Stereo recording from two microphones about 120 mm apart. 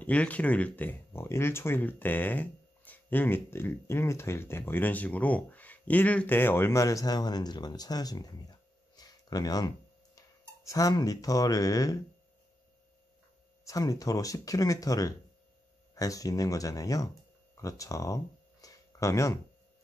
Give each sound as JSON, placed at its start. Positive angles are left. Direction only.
{"t": 0.0, "sound": "speech", "side_deg": 10}
{"t": 13.7, "sound": "speech", "side_deg": 30}
{"t": 17.6, "sound": "a sound", "side_deg": 25}